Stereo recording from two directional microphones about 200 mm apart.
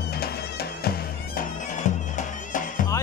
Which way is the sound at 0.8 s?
40° left (ahead or behind).